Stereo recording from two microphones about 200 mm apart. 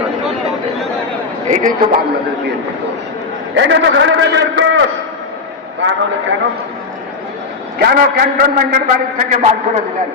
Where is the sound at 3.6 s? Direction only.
65° right (ahead or behind).